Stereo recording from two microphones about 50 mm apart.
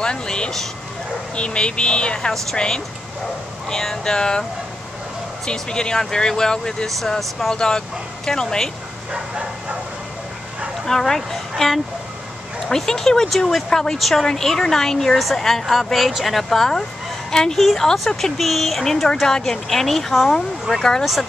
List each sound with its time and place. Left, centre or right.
0.0 s a sound: centre
1.3 s speech: left
6.9 s speech: centre
9.1 s bow-wow: right
10.9 s speech: centre
20.7 s speech: centre